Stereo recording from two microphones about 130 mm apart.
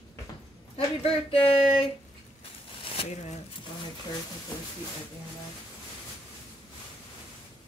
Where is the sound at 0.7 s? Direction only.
45° left (ahead or behind).